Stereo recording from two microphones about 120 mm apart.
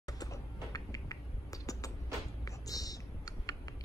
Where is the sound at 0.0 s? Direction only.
30° left (ahead or behind).